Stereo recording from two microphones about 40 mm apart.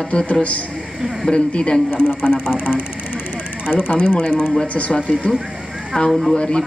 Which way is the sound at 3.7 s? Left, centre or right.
Left.